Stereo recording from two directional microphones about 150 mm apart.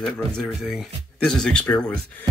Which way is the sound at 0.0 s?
5° left (ahead or behind).